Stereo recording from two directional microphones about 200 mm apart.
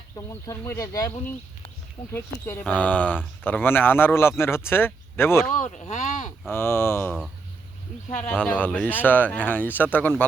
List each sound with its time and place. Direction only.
0.2 s speech: 15° left (ahead or behind)
5.5 s speech: 35° left (ahead or behind)
6.5 s speech: 10° left (ahead or behind)
8.3 s speech: 5° left (ahead or behind)